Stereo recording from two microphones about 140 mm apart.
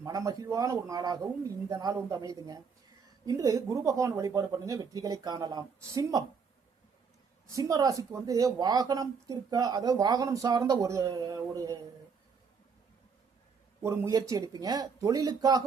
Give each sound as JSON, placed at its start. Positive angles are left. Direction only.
{"t": 0.0, "sound": "speech", "side_deg": -25}
{"t": 7.5, "sound": "speech", "side_deg": -25}
{"t": 13.8, "sound": "speech", "side_deg": -20}